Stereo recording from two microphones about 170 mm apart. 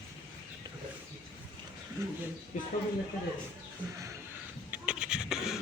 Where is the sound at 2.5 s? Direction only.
45° left (ahead or behind).